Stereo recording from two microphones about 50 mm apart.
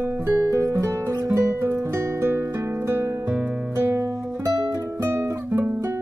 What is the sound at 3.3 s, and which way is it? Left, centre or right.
Music, right.